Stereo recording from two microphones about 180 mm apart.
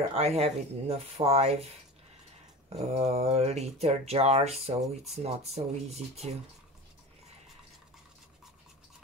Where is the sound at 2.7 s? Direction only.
35° right (ahead or behind).